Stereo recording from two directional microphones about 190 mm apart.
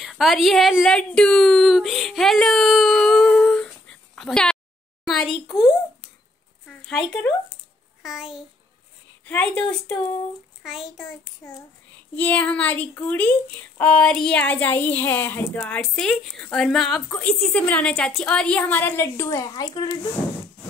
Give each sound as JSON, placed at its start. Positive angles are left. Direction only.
{"t": 0.0, "sound": "a sound", "side_deg": 0}
{"t": 5.6, "sound": "a child's voice", "side_deg": 0}
{"t": 11.4, "sound": "speech", "side_deg": 10}